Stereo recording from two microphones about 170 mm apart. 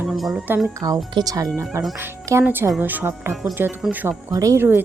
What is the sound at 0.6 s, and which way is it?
Speech, 20° right (ahead or behind).